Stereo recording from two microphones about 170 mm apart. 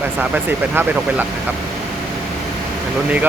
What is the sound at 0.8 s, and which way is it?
Speech, 15° right (ahead or behind).